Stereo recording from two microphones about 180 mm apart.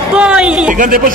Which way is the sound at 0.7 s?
50° right (ahead or behind).